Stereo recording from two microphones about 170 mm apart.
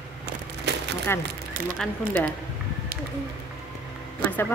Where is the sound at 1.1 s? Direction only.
15° left (ahead or behind).